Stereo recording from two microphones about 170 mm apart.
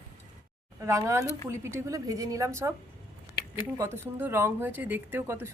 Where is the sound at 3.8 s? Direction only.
15° right (ahead or behind).